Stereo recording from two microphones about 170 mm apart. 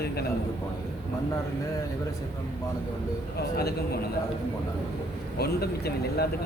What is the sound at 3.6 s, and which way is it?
Speech, 65° left (ahead or behind).